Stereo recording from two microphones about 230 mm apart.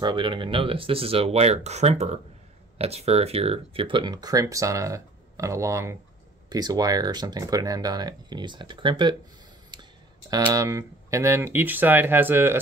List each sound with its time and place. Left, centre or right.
0.0 s speech: right
9.7 s a sound: centre
10.3 s speech: centre